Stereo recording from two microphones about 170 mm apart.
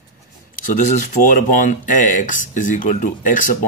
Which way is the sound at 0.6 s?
50° left (ahead or behind).